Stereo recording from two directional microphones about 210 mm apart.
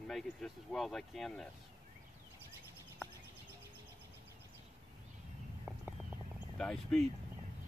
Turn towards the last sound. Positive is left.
turn(degrees=0)  # may be behind; listen again after turning